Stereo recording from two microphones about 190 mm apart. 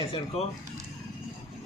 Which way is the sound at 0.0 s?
30° left (ahead or behind).